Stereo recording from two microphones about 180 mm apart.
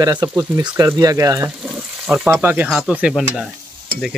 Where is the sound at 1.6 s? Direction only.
5° right (ahead or behind).